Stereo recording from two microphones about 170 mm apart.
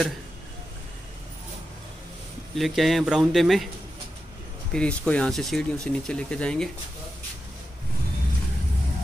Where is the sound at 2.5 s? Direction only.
Centre (ahead or behind).